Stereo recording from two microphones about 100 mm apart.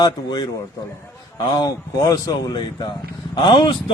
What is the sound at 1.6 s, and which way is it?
A man's voice, 35° left (ahead or behind).